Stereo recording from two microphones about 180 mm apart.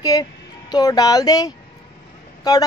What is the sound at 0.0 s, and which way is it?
Speech, 20° left (ahead or behind).